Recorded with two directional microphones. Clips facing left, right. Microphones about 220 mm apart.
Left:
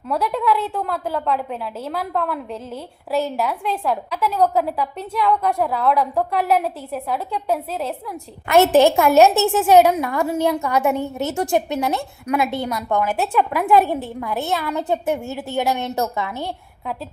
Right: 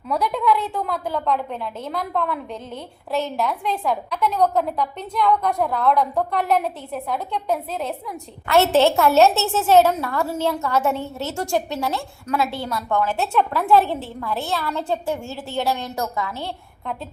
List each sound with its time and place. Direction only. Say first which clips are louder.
0.1 s a woman's voice: even; 5° left (ahead or behind)
8.4 s a woman's voice: left 3 dB; 15° left (ahead or behind)